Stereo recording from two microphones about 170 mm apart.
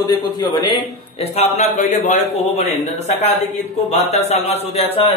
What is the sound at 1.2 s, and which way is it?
A man's voice, 40° left (ahead or behind).